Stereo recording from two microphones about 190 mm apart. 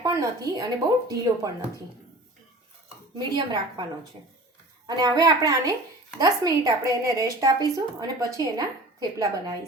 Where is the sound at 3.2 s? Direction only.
20° right (ahead or behind).